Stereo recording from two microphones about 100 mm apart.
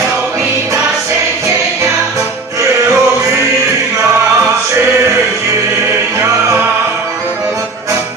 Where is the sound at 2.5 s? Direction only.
30° right (ahead or behind).